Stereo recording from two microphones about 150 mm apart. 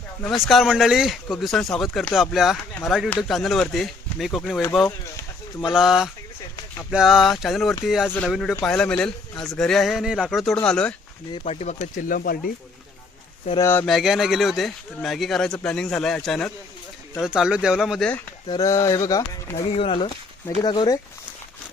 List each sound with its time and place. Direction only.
0.3 s speech: centre (ahead or behind)
5.7 s speech: 5° right (ahead or behind)
11.4 s speech: 50° left (ahead or behind); by 12.5 s 70° left (ahead or behind)
13.6 s speech: 15° left (ahead or behind)
13.8 s speech: centre (ahead or behind)
18.4 s speech: 25° left (ahead or behind)
19.7 s speech: 40° left (ahead or behind)